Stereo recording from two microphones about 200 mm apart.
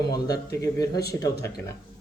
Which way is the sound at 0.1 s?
15° left (ahead or behind).